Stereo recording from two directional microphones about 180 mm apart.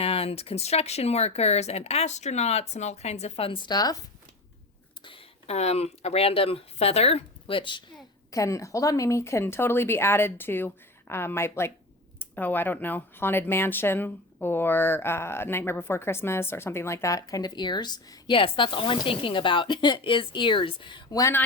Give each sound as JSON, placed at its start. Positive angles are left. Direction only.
{"t": 0.0, "sound": "speech", "side_deg": 35}
{"t": 5.0, "sound": "speech", "side_deg": 30}